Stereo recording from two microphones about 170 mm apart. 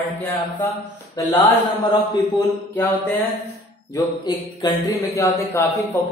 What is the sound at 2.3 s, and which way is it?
Speech, 15° left (ahead or behind).